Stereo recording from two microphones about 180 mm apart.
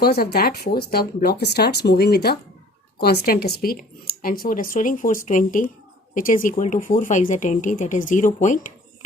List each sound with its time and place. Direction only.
0.0 s speech: 60° left (ahead or behind); by 9.0 s 45° left (ahead or behind)